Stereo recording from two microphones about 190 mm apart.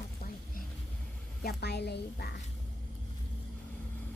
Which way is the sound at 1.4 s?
55° left (ahead or behind).